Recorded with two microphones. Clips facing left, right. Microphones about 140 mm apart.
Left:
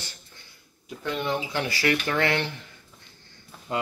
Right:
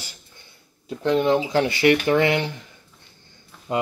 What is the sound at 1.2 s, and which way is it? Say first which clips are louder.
Speech: right 8 dB; 45° right (ahead or behind).